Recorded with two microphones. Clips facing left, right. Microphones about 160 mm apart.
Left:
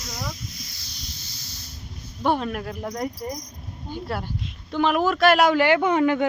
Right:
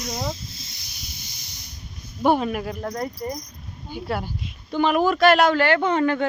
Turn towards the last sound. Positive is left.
turn(degrees=10)  # may be behind; listen again after turning